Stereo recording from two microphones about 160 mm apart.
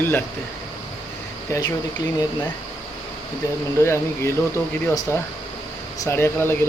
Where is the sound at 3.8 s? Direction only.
15° left (ahead or behind).